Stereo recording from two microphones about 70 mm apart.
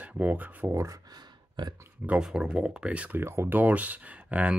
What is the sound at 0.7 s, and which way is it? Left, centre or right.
Speech, right.